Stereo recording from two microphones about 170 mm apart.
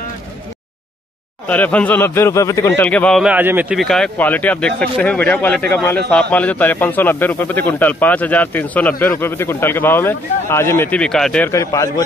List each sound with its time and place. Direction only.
1.5 s speech: 10° left (ahead or behind)
3.3 s speech: 10° right (ahead or behind)
11.5 s a man's voice: 20° left (ahead or behind)